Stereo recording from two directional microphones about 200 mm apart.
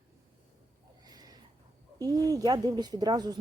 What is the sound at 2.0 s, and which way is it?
Speech, 20° right (ahead or behind).